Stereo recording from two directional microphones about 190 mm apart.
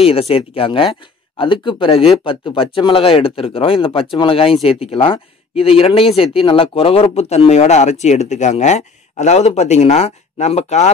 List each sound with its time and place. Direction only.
0.0 s speech: 30° left (ahead or behind)